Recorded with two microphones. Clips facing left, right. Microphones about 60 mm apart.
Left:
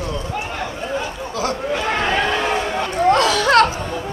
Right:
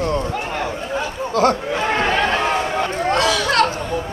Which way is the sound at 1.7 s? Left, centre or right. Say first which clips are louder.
Right 1 dB; right.